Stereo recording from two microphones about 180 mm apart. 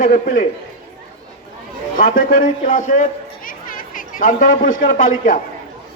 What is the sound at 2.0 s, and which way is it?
Speech, 50° left (ahead or behind).